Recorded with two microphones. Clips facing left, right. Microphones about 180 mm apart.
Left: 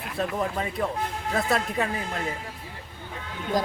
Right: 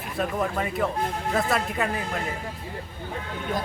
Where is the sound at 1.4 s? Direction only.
Centre (ahead or behind).